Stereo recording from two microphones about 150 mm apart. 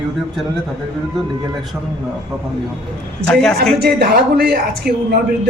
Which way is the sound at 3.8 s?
90° right.